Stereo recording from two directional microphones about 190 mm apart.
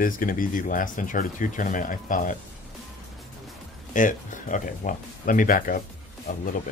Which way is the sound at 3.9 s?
45° left (ahead or behind).